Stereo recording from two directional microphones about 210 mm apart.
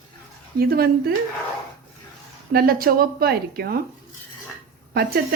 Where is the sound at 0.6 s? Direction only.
45° right (ahead or behind).